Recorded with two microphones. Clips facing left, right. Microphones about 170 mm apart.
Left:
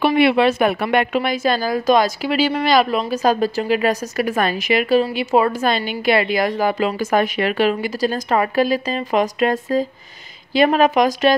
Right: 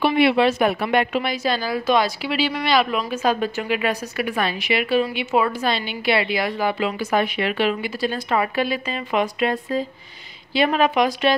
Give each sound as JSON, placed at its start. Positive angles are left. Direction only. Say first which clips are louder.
{"t": 0.0, "sound": "a woman's voice", "louder": "left 2 dB", "side_deg": 55}